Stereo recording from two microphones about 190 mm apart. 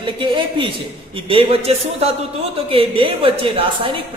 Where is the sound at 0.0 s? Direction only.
25° right (ahead or behind).